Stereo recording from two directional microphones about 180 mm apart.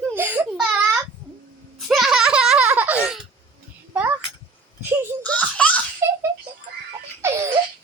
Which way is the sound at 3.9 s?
10° right (ahead or behind).